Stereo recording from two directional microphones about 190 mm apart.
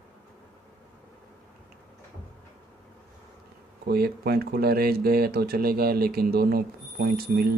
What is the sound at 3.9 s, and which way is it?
Speech, 55° right (ahead or behind).